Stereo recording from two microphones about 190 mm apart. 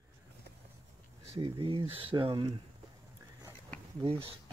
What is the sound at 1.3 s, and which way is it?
Speech, 30° right (ahead or behind).